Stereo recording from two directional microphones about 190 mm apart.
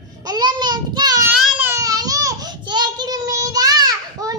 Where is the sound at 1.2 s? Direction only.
10° right (ahead or behind).